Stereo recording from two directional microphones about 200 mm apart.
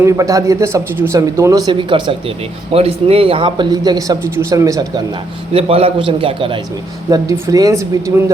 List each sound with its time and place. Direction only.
0.0 s speech: 15° right (ahead or behind)
5.5 s speech: 30° right (ahead or behind)